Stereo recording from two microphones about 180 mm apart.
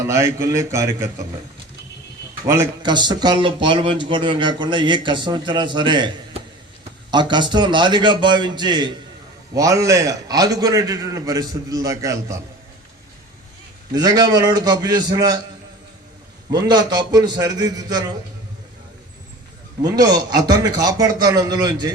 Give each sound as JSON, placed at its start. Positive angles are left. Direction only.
{"t": 0.0, "sound": "a man's voice", "side_deg": -15}
{"t": 2.5, "sound": "speech", "side_deg": -20}
{"t": 7.1, "sound": "speech", "side_deg": -25}
{"t": 13.9, "sound": "speech", "side_deg": -20}
{"t": 16.5, "sound": "speech", "side_deg": -25}
{"t": 19.8, "sound": "speech", "side_deg": -20}